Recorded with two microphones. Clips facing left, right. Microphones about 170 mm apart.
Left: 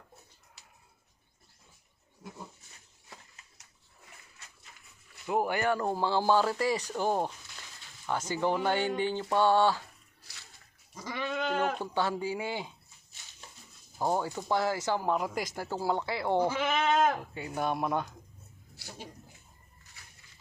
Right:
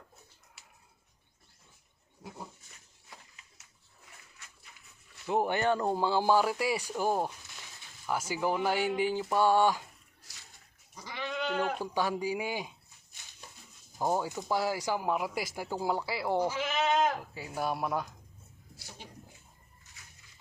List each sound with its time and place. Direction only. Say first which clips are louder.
5.5 s speech: right 1 dB; 20° right (ahead or behind)
10.9 s goat: left 3 dB; 45° left (ahead or behind)
11.8 s speech: even; 15° right (ahead or behind)
14.0 s speech: even; 15° right (ahead or behind)
16.4 s goat: left 2 dB; 55° left (ahead or behind)
17.2 s speech: left 2 dB; 5° right (ahead or behind)